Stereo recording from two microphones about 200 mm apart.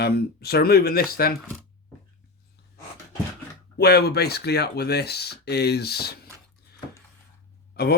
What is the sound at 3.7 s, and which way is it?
Speech, 55° left (ahead or behind).